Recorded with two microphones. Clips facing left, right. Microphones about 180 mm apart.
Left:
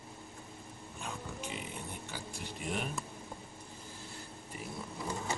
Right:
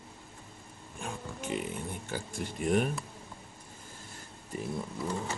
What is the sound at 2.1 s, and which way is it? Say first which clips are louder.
Speech: right 7 dB; 50° right (ahead or behind).